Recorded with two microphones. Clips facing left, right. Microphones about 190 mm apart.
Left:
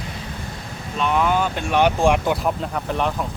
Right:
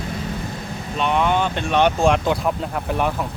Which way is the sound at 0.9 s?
Centre (ahead or behind).